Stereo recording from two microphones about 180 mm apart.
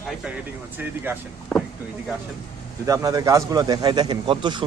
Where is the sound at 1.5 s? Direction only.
5° left (ahead or behind).